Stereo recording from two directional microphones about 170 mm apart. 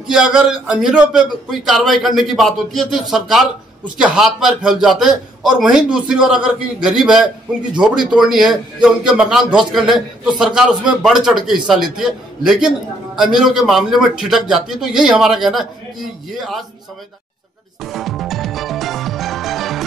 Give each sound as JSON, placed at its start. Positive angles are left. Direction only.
{"t": 0.1, "sound": "a man's voice", "side_deg": -5}
{"t": 17.8, "sound": "music", "side_deg": 0}